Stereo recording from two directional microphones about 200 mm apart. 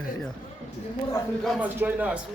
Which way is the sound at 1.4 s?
Centre (ahead or behind).